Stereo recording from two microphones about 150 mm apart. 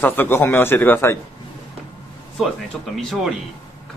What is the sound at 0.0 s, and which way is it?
A man's voice, 15° left (ahead or behind).